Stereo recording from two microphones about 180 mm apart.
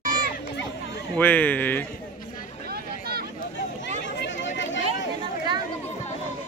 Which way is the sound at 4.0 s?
80° left.